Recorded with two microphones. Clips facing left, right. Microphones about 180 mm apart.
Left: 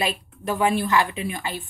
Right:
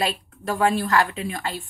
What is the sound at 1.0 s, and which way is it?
Speech, 15° left (ahead or behind).